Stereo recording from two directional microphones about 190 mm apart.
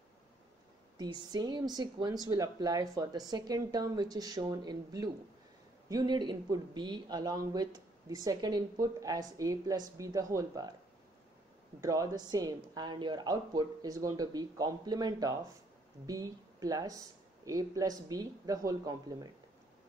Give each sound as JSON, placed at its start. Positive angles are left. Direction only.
{"t": 0.9, "sound": "speech", "side_deg": -20}
{"t": 11.8, "sound": "speech", "side_deg": -15}